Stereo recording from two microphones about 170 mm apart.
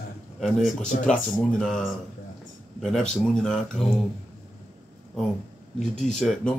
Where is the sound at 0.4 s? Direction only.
Centre (ahead or behind).